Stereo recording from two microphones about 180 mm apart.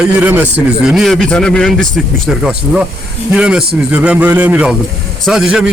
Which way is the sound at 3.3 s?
5° right (ahead or behind).